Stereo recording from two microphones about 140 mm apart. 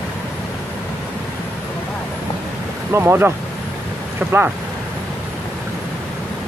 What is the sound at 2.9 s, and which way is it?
Speech, 15° right (ahead or behind).